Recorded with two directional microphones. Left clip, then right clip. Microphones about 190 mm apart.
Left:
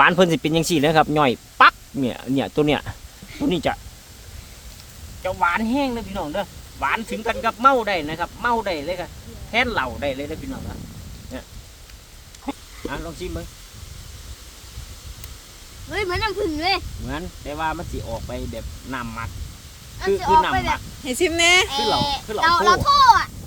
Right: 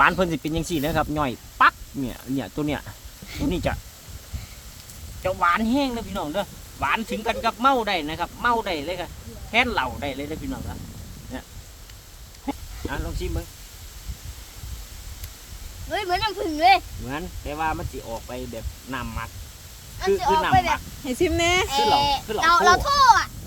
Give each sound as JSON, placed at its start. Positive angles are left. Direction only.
{"t": 0.0, "sound": "speech", "side_deg": 60}
{"t": 3.4, "sound": "speech", "side_deg": 35}
{"t": 5.2, "sound": "speech", "side_deg": 5}
{"t": 12.5, "sound": "a sound", "side_deg": 10}
{"t": 15.9, "sound": "speech", "side_deg": -10}
{"t": 17.1, "sound": "speech", "side_deg": 20}
{"t": 20.0, "sound": "speech", "side_deg": -15}
{"t": 20.7, "sound": "speech", "side_deg": 20}
{"t": 21.7, "sound": "speech", "side_deg": -20}